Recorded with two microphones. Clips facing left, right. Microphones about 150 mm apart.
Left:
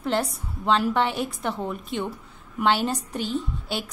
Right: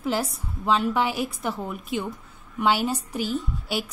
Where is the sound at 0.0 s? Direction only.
5° right (ahead or behind).